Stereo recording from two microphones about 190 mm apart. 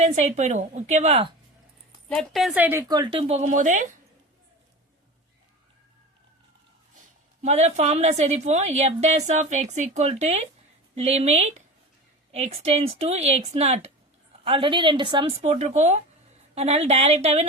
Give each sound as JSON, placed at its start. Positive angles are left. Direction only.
{"t": 0.0, "sound": "a woman's voice", "side_deg": -35}
{"t": 2.0, "sound": "speech", "side_deg": 0}
{"t": 7.4, "sound": "a woman's voice", "side_deg": -35}
{"t": 15.4, "sound": "a woman's voice", "side_deg": -35}